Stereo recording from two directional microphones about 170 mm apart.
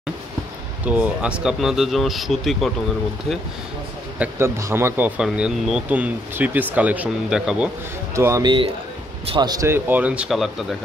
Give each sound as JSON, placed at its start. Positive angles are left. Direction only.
{"t": 0.8, "sound": "speech", "side_deg": -10}
{"t": 4.2, "sound": "speech", "side_deg": -15}
{"t": 8.1, "sound": "speech", "side_deg": -15}